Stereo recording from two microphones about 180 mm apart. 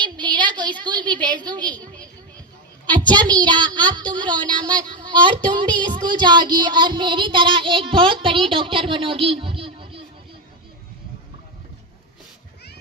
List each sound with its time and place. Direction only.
0.0 s a woman's voice: 25° right (ahead or behind)
2.8 s a sound: 25° right (ahead or behind)
3.4 s speech: 25° right (ahead or behind)